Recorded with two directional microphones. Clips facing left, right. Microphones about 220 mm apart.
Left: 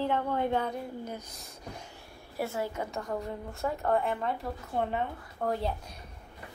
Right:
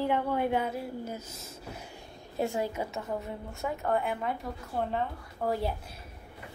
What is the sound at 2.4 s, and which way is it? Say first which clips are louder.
Speech: right 2 dB; 15° right (ahead or behind).